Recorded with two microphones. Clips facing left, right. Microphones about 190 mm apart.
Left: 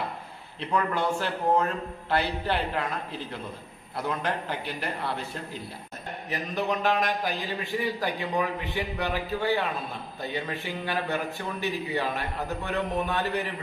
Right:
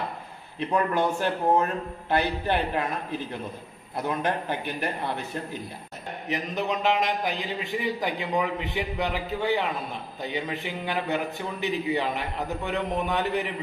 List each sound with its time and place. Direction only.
0.6 s a man's voice: 15° right (ahead or behind)
4.2 s a man's voice: 20° right (ahead or behind)
6.2 s a man's voice: 20° right (ahead or behind)